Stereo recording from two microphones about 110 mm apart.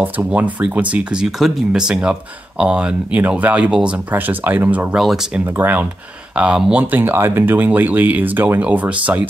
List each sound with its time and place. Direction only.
0.0 s speech: 15° right (ahead or behind)
4.9 s speech: 5° right (ahead or behind)
5.4 s speech: 15° right (ahead or behind)